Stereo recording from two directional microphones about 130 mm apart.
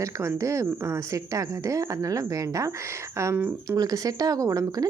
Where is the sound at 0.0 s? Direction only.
25° right (ahead or behind).